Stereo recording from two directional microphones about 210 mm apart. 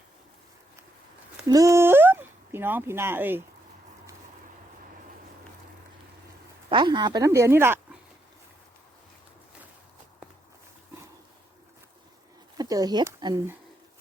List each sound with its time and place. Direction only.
1.5 s speech: 15° right (ahead or behind)
6.7 s speech: 20° right (ahead or behind)
12.5 s speech: 15° right (ahead or behind)